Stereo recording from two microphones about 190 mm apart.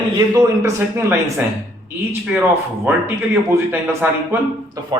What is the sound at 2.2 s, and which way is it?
A man's voice, 10° right (ahead or behind).